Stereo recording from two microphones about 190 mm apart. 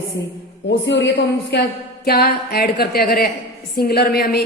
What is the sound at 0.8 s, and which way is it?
Speech, 70° left (ahead or behind).